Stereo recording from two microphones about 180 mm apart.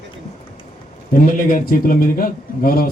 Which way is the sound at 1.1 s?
50° left (ahead or behind).